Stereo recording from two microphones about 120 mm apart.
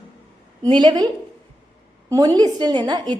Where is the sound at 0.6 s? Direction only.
40° right (ahead or behind).